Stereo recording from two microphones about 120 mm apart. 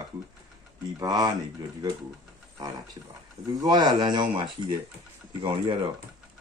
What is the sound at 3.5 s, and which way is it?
Speech, 35° right (ahead or behind).